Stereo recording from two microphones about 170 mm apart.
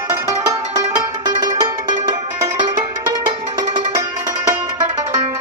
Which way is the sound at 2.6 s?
25° right (ahead or behind).